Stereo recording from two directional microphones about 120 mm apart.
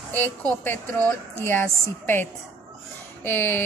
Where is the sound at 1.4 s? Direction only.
20° left (ahead or behind).